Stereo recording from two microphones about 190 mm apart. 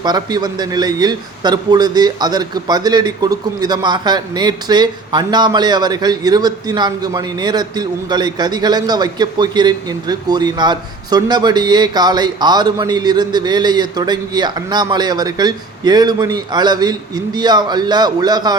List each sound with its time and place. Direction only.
0.0 s a man's voice: 20° right (ahead or behind)